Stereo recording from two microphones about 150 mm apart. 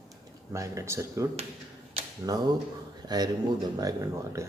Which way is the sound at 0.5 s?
20° right (ahead or behind).